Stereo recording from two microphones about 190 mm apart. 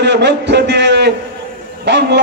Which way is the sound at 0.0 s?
65° right (ahead or behind).